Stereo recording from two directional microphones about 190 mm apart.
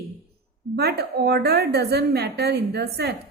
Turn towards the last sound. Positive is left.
turn(degrees=-55)  # may be behind; listen again after turning